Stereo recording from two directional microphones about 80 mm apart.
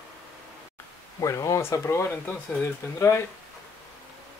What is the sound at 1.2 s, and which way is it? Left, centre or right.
Speech, left.